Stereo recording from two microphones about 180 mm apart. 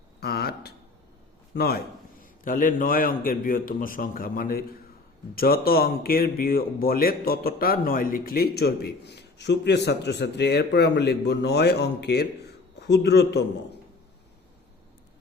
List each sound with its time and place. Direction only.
0.2 s a man's voice: 65° left (ahead or behind)
2.4 s a man's voice: 50° left (ahead or behind); by 13.4 s 65° left (ahead or behind)